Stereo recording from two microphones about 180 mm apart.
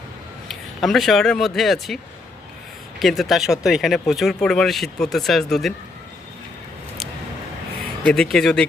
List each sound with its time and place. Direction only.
0.4 s speech: centre (ahead or behind)
3.0 s speech: centre (ahead or behind)
8.0 s speech: 5° left (ahead or behind)